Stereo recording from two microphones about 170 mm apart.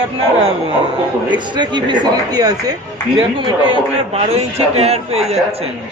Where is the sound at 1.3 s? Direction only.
25° right (ahead or behind).